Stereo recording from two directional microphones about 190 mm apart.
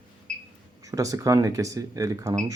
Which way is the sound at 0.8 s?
15° right (ahead or behind).